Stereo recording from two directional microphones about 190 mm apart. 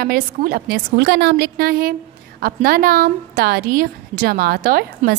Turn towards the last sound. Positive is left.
turn(degrees=-50)  # may be behind; listen again after turning